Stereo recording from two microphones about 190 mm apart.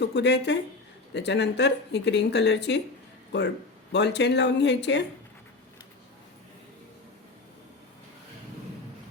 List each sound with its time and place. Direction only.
0.0 s speech: 65° left (ahead or behind)
3.9 s speech: 65° left (ahead or behind)